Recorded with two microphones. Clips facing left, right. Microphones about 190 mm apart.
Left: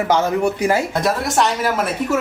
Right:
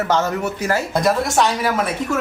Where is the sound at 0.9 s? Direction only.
Centre (ahead or behind).